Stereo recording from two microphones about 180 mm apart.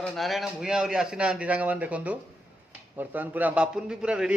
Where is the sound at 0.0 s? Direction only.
Centre (ahead or behind).